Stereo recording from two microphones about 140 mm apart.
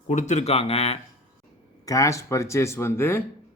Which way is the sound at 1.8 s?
25° left (ahead or behind).